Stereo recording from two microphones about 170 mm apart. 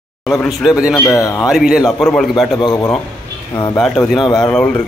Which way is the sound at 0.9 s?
15° left (ahead or behind).